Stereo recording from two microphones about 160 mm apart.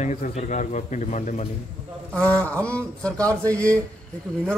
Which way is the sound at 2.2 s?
10° left (ahead or behind).